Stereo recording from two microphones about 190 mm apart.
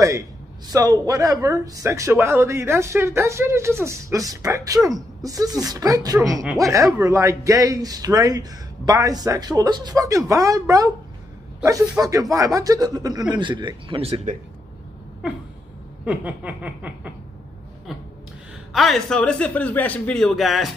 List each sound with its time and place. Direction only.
0.7 s speech: 20° right (ahead or behind)
16.1 s speech: 10° right (ahead or behind)
18.7 s speech: centre (ahead or behind)